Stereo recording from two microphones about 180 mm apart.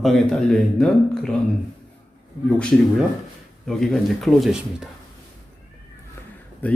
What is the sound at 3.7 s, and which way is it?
A man's voice, centre (ahead or behind).